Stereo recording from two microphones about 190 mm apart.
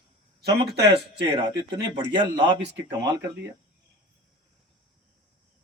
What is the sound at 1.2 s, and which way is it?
Speech, 25° right (ahead or behind).